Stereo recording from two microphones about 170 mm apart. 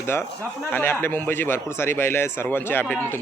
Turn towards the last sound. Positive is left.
turn(degrees=10)  # may be behind; listen again after turning